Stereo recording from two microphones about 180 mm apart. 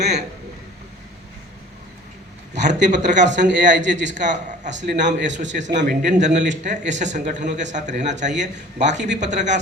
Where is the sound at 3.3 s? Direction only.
80° right.